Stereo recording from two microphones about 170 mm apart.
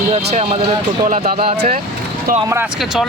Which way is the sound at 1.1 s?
60° right (ahead or behind).